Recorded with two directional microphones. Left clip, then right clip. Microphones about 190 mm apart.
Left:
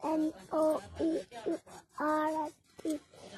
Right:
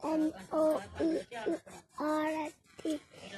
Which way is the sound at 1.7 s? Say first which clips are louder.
Left 2 dB; centre (ahead or behind).